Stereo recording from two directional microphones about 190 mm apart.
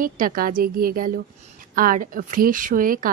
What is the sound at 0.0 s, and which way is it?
Speech, 45° right (ahead or behind).